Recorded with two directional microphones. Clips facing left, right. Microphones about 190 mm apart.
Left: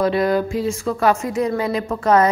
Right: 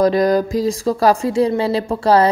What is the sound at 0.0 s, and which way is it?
Speech, 40° right (ahead or behind).